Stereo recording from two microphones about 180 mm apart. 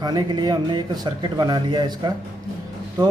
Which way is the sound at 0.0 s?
25° right (ahead or behind).